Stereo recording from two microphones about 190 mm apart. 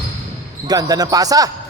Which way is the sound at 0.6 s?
20° right (ahead or behind).